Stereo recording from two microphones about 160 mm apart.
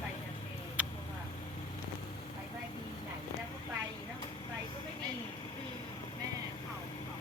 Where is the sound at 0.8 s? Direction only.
10° right (ahead or behind).